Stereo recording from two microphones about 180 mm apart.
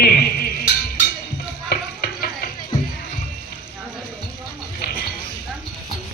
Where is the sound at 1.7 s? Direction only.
55° left (ahead or behind).